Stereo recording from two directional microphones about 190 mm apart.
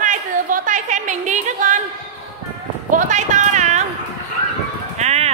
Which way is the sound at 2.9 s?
40° right (ahead or behind).